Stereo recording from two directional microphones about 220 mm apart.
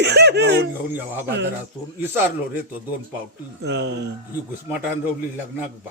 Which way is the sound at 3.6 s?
50° right (ahead or behind).